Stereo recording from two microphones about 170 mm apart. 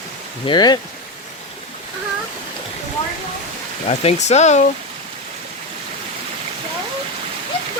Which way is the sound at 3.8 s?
40° left (ahead or behind).